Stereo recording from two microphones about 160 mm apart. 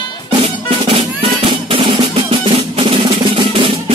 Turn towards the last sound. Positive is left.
turn(degrees=-35)  # may be behind; listen again after turning